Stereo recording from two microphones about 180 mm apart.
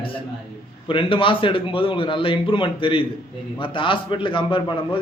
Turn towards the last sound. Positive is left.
turn(degrees=30)  # may be behind; listen again after turning